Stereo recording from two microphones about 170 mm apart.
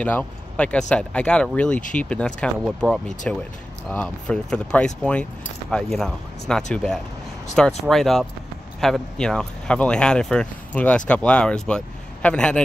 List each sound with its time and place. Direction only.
0.0 s speech: 10° left (ahead or behind)